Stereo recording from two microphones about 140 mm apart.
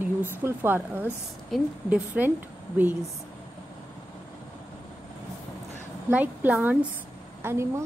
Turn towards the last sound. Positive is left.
turn(degrees=-20)  # may be behind; listen again after turning